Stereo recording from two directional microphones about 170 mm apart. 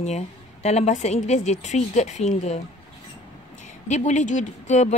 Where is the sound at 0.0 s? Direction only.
40° left (ahead or behind).